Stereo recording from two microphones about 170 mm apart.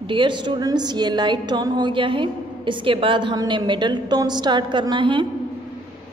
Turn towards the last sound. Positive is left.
turn(degrees=-30)  # may be behind; listen again after turning